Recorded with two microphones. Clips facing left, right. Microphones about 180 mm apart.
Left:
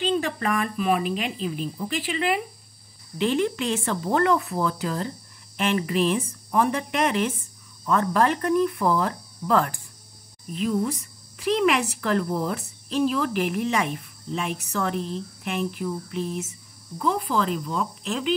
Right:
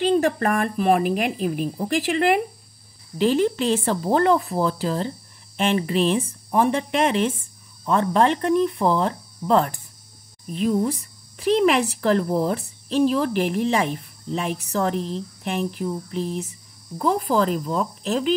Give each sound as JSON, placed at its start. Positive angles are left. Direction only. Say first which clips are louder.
{"t": 0.1, "sound": "speech", "louder": "right 5 dB", "side_deg": -40}
{"t": 3.2, "sound": "a woman's voice", "louder": "right 4 dB", "side_deg": -35}
{"t": 10.5, "sound": "a woman's voice", "louder": "right 3 dB", "side_deg": -35}